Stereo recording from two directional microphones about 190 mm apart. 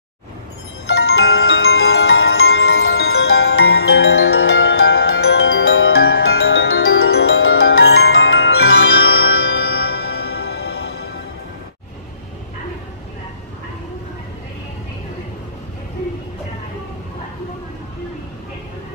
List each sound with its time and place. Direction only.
0.8 s glockenspiel: 75° left (ahead or behind)
5.6 s music: 90° left
6.0 s glockenspiel: 65° left (ahead or behind)